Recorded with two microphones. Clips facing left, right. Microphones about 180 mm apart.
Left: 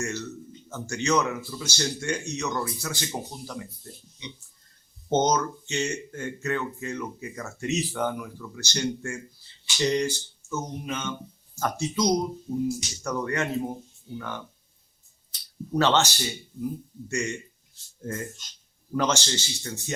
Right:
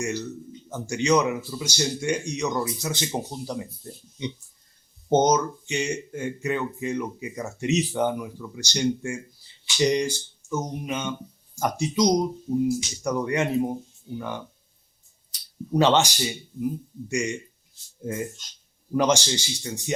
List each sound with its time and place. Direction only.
0.0 s speech: 10° right (ahead or behind)
5.0 s speech: 10° right (ahead or behind)
15.7 s speech: 15° right (ahead or behind)